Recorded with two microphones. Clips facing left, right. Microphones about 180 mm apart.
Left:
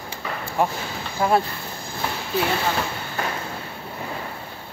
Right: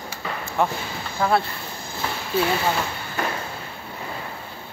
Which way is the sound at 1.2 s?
20° left (ahead or behind).